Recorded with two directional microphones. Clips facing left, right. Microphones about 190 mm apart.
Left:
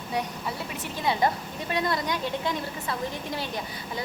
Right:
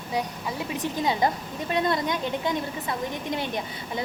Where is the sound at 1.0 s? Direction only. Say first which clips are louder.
Even; 15° right (ahead or behind).